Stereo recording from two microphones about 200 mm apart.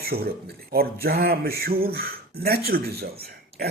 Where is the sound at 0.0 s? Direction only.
50° right (ahead or behind).